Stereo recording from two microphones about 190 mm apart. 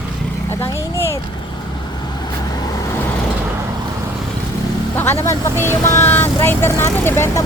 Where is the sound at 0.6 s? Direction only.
15° left (ahead or behind).